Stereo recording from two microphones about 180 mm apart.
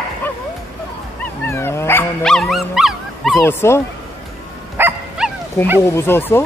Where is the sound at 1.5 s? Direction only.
15° left (ahead or behind).